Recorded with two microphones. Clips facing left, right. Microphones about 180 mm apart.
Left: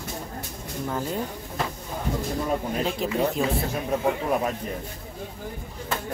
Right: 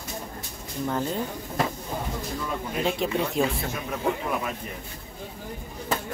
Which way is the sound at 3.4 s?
Centre (ahead or behind).